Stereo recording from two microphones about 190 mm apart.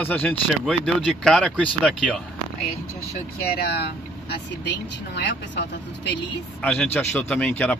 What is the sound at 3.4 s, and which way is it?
Speech, 55° left (ahead or behind).